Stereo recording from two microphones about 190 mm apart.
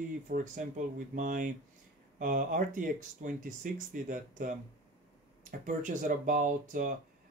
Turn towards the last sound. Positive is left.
turn(degrees=-45)  # may be behind; listen again after turning